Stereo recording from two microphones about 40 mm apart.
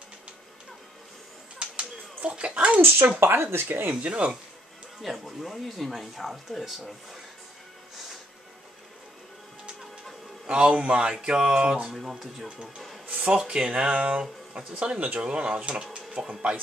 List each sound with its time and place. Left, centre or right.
2.2 s speech: right
2.8 s speech: right
3.9 s speech: right
5.0 s speech: centre
10.4 s speech: right
11.9 s speech: centre
12.4 s speech: right
13.7 s speech: right